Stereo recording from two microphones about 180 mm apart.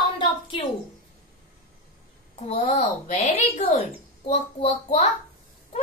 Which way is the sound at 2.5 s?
40° left (ahead or behind).